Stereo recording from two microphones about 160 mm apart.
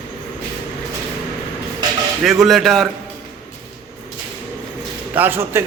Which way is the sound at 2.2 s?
Centre (ahead or behind).